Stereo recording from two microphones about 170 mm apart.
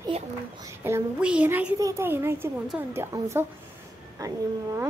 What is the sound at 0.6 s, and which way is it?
A woman's voice, 15° right (ahead or behind).